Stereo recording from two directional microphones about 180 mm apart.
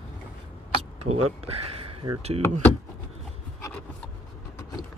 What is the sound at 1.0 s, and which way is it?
Speech, 35° right (ahead or behind).